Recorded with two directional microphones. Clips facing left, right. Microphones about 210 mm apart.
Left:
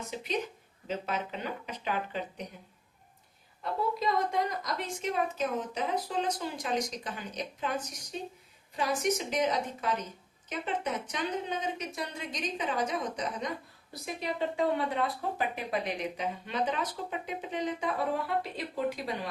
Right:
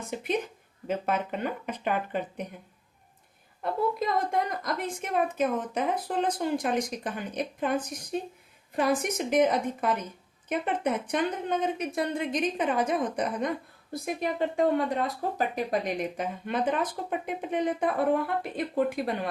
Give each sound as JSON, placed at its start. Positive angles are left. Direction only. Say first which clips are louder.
{"t": 0.1, "sound": "a woman's voice", "louder": "right 5 dB", "side_deg": -55}
{"t": 3.6, "sound": "a woman's voice", "louder": "right 4 dB", "side_deg": -55}